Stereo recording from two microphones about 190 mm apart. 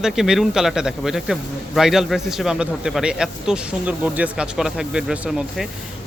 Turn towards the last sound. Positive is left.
turn(degrees=-5)  # may be behind; listen again after turning